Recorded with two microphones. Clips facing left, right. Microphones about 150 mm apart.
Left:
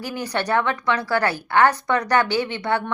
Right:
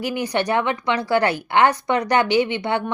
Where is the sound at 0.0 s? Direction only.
15° right (ahead or behind).